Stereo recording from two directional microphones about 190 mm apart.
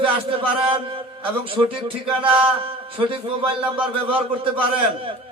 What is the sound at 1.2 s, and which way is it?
A man's voice, 30° right (ahead or behind).